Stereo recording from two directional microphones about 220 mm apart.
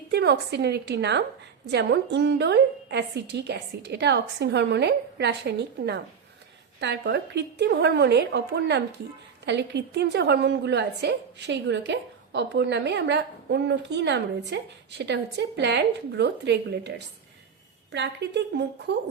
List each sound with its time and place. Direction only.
0.1 s a woman's voice: 50° right (ahead or behind)
17.9 s a woman's voice: 50° right (ahead or behind)